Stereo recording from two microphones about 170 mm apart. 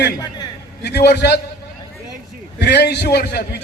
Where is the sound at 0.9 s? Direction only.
80° left.